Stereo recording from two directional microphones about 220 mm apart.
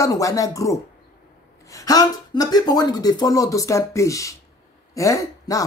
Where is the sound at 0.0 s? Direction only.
15° left (ahead or behind).